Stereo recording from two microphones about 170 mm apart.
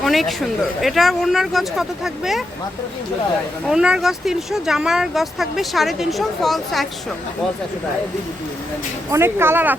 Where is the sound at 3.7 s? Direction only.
5° right (ahead or behind).